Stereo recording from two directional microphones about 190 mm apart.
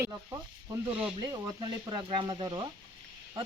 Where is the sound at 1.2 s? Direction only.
20° right (ahead or behind).